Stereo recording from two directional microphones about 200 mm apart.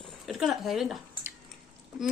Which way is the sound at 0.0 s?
Centre (ahead or behind).